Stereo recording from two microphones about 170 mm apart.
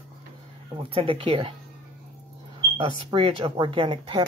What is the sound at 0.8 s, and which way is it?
Speech, 30° right (ahead or behind).